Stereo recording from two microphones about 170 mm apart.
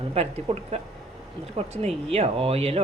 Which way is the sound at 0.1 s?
35° right (ahead or behind).